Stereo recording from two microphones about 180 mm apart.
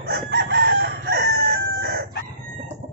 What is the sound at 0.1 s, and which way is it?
Chicken, 65° right (ahead or behind).